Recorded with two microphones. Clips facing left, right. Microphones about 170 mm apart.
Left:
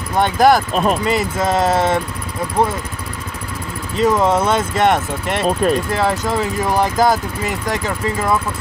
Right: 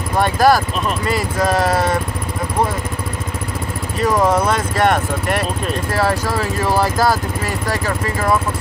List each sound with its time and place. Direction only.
0.2 s speech: 20° left (ahead or behind)
4.0 s speech: 25° left (ahead or behind)